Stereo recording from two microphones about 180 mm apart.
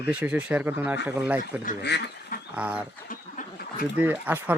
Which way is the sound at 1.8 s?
70° left (ahead or behind).